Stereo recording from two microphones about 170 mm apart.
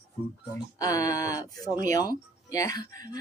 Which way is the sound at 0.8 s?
20° left (ahead or behind).